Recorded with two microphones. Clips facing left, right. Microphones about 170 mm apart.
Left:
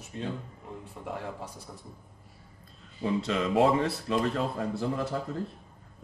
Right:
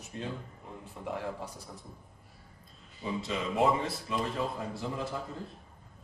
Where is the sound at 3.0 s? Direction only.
70° left (ahead or behind).